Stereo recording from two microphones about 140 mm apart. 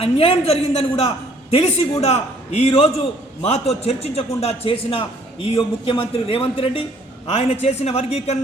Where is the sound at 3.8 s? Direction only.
45° left (ahead or behind).